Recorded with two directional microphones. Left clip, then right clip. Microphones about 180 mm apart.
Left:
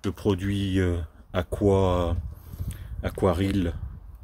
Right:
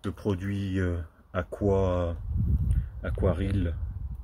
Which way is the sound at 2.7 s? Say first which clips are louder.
Left 3 dB; 60° left (ahead or behind).